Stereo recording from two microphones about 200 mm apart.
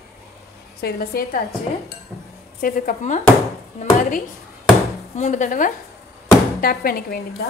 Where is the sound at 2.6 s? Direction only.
45° left (ahead or behind).